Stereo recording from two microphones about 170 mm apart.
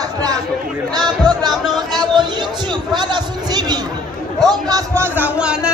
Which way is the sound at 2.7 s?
25° right (ahead or behind).